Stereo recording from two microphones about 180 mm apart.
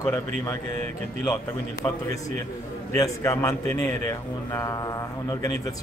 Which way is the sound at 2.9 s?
15° left (ahead or behind).